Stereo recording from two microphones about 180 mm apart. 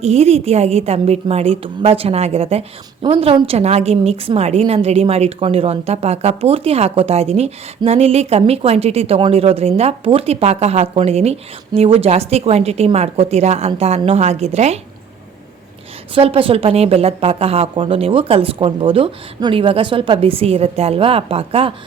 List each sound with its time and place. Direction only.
0.0 s speech: 35° right (ahead or behind)
16.1 s speech: 30° right (ahead or behind)